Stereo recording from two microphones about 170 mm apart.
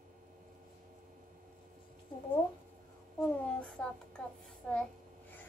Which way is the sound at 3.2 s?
5° left (ahead or behind).